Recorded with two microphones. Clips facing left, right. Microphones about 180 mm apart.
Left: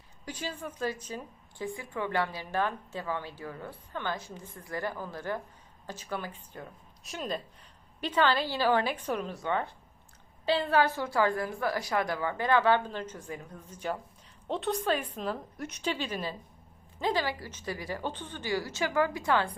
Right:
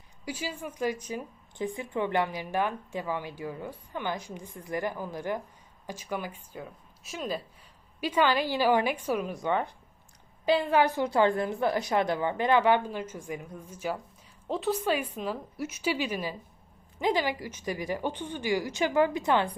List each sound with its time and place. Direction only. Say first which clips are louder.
0.3 s a woman's voice: right 2 dB; 10° right (ahead or behind)